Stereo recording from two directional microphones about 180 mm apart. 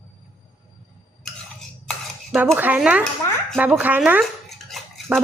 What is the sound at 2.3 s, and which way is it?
Speech, 10° right (ahead or behind).